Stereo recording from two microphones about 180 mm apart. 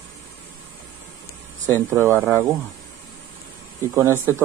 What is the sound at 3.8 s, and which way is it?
Speech, 15° right (ahead or behind).